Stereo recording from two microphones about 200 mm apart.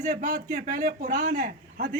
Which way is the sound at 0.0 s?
40° right (ahead or behind).